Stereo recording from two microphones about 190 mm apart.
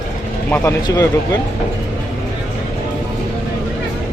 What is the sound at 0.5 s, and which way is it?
Speech, 15° left (ahead or behind).